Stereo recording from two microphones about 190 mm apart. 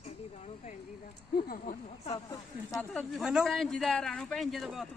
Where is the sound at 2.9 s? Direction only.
Centre (ahead or behind).